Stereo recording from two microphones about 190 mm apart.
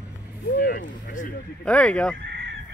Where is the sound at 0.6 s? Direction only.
50° left (ahead or behind).